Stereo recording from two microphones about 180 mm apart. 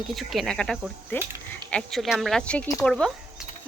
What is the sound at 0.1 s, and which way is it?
Speech, centre (ahead or behind).